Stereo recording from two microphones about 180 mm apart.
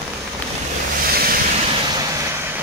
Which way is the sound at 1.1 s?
55° right (ahead or behind).